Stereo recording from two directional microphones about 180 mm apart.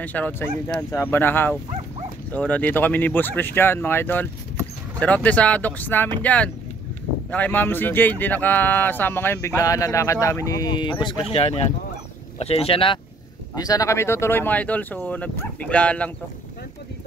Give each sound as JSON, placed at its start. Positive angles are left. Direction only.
{"t": 0.0, "sound": "speech", "side_deg": 10}
{"t": 13.6, "sound": "speech", "side_deg": 20}